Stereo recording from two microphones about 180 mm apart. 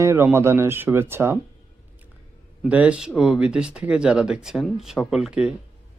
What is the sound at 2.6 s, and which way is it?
Speech, 5° right (ahead or behind).